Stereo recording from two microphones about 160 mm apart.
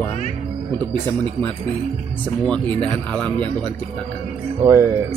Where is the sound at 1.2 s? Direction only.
10° left (ahead or behind).